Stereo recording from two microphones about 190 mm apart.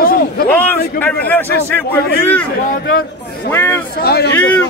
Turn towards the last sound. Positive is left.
turn(degrees=10)  # may be behind; listen again after turning